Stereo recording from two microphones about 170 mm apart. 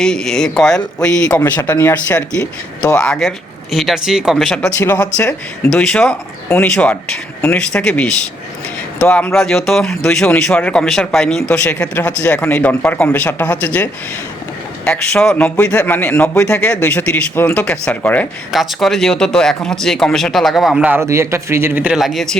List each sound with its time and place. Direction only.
0.0 s a man's voice: 5° left (ahead or behind)
14.8 s a man's voice: 5° left (ahead or behind)